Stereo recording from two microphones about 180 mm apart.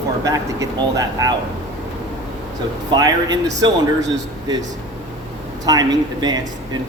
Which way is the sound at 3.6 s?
25° right (ahead or behind).